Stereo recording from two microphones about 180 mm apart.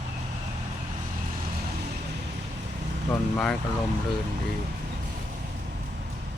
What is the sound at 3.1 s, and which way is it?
Speech, 5° left (ahead or behind).